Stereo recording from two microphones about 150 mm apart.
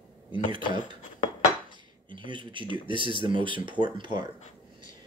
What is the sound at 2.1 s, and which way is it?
Speech, 35° right (ahead or behind).